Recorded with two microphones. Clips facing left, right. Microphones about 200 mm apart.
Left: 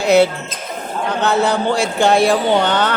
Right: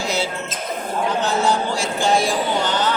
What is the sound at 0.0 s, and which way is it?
A man's voice, 60° left (ahead or behind).